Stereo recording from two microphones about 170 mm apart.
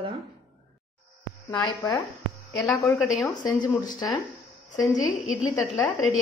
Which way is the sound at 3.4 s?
25° left (ahead or behind).